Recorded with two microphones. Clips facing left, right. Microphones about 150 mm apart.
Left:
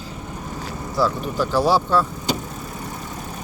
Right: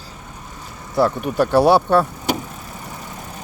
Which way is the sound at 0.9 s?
60° right (ahead or behind).